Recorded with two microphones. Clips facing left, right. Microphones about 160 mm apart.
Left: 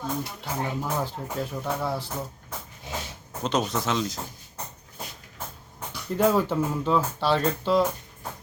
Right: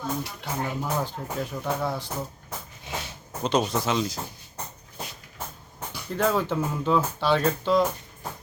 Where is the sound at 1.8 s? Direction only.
5° left (ahead or behind).